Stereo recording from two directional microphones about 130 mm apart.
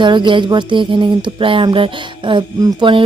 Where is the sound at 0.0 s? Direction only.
35° right (ahead or behind).